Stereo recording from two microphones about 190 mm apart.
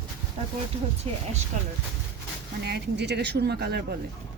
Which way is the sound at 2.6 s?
60° right (ahead or behind).